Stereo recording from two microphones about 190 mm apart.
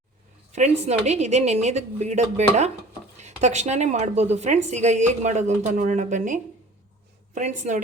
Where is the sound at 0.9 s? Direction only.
35° right (ahead or behind).